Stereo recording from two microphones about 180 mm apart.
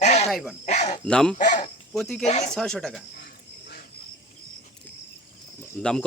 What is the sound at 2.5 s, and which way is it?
Speech, 5° left (ahead or behind).